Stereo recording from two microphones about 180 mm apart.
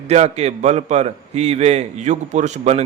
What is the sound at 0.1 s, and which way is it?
Speech, 35° right (ahead or behind).